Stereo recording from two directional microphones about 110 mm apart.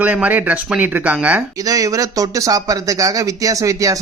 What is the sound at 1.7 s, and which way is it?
Speech, 30° right (ahead or behind).